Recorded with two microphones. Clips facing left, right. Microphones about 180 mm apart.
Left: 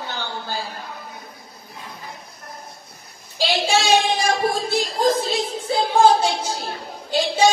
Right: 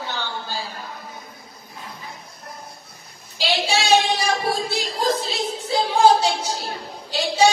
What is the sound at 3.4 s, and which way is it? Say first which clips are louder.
Child singing: left 2 dB; 50° left (ahead or behind).